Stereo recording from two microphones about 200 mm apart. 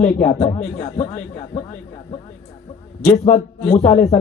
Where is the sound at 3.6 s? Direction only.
35° left (ahead or behind).